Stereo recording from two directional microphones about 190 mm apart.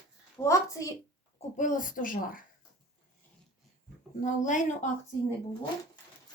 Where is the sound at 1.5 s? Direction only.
45° left (ahead or behind).